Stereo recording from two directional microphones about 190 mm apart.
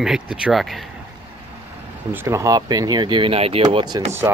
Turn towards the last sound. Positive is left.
turn(degrees=-25)  # may be behind; listen again after turning